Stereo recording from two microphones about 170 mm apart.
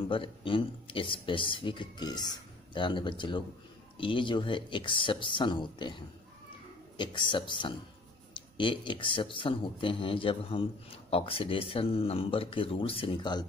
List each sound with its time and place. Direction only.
0.1 s speech: 30° left (ahead or behind)